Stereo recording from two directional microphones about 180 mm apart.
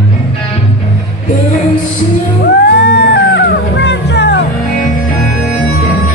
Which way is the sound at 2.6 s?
70° left (ahead or behind).